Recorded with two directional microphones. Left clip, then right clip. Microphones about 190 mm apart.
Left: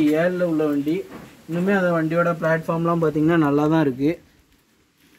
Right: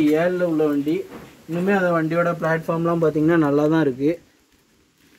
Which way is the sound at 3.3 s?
35° left (ahead or behind).